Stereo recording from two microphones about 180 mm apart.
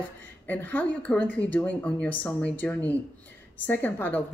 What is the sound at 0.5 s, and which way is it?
Speech, 10° left (ahead or behind).